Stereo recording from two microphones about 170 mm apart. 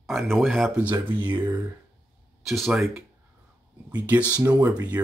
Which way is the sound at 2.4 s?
Centre (ahead or behind).